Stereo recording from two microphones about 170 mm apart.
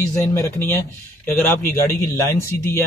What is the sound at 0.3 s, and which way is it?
Speech, 15° left (ahead or behind).